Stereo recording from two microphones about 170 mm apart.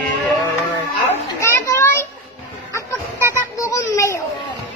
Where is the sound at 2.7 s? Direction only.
15° left (ahead or behind).